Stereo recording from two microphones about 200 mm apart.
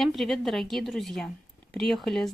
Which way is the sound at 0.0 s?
Centre (ahead or behind).